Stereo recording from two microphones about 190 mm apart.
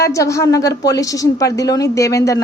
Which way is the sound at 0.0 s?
15° left (ahead or behind).